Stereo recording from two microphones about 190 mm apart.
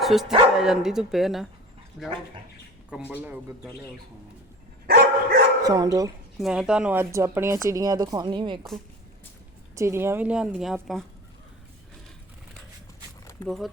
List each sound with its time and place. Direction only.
0.0 s speech: centre (ahead or behind)
4.9 s dog: 55° right (ahead or behind)
5.6 s speech: 20° right (ahead or behind)
6.4 s speech: 5° right (ahead or behind); by 8.6 s 25° right (ahead or behind)
9.7 s speech: 15° right (ahead or behind)